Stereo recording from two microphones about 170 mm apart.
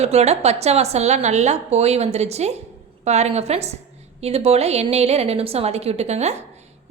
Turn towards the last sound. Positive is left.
turn(degrees=-40)  # may be behind; listen again after turning